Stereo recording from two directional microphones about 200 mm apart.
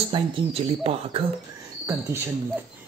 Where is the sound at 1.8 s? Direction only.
10° right (ahead or behind).